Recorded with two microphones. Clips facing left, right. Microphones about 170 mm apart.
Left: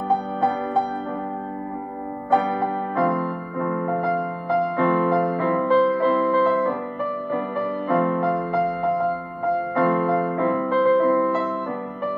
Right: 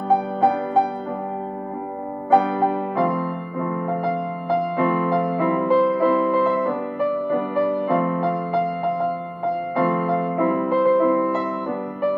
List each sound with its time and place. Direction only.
2.6 s music: 15° right (ahead or behind)
9.8 s music: 15° right (ahead or behind)